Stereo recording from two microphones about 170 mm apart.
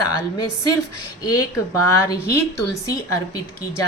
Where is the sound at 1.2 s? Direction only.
20° left (ahead or behind).